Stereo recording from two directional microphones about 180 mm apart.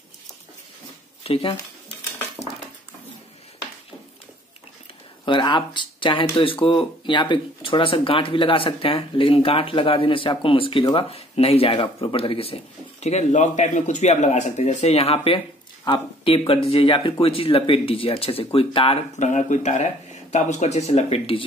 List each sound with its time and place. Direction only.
1.2 s speech: 30° left (ahead or behind)
5.2 s speech: 25° left (ahead or behind)
19.1 s speech: 40° left (ahead or behind)